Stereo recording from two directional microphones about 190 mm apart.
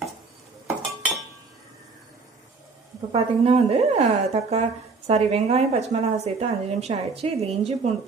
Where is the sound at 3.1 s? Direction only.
30° right (ahead or behind).